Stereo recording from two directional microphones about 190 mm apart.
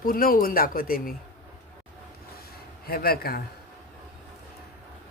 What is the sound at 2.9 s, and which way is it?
Speech, 55° left (ahead or behind).